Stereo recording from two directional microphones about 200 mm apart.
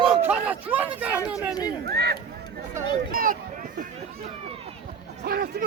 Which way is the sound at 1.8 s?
55° right (ahead or behind).